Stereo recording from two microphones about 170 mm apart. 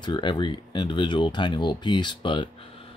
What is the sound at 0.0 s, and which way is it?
Speech, 25° left (ahead or behind).